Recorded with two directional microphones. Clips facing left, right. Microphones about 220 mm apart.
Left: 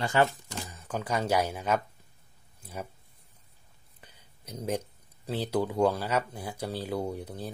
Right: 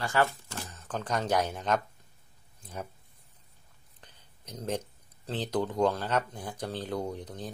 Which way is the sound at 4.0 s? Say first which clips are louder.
Left 1 dB; 10° left (ahead or behind).